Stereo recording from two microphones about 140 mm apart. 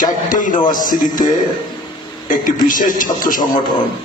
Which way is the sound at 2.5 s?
70° left (ahead or behind).